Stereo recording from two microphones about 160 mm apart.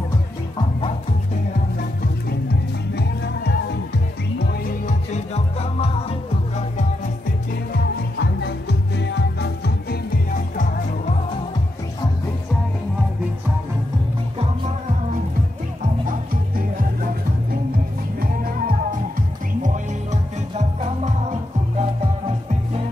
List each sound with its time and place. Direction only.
3.0 s music: 90° left
4.4 s music: 70° left (ahead or behind); by 6.1 s 40° left (ahead or behind)
8.2 s music: 90° left; by 10.7 s 65° left (ahead or behind)
19.6 s music: 45° right (ahead or behind)